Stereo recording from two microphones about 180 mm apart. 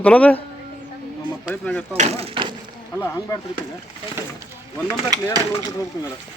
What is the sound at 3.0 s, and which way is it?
Speech, 15° left (ahead or behind).